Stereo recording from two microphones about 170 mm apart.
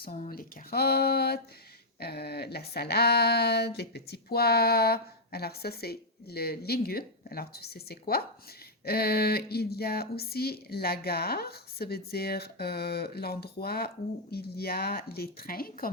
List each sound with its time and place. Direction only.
0.3 s speech: 60° left (ahead or behind)